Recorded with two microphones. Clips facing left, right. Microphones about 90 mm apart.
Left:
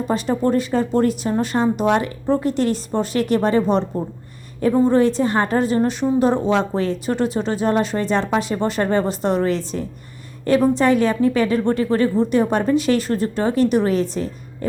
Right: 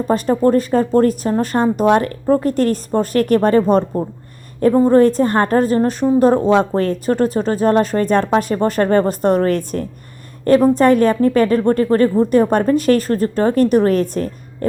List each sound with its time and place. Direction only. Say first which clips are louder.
0.1 s a woman's voice: right 5 dB; 45° right (ahead or behind)